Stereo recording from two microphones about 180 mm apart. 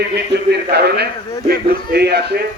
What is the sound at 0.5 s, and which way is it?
A man's voice, 65° right (ahead or behind).